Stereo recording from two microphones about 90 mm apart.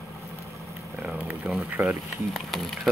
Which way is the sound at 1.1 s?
20° right (ahead or behind).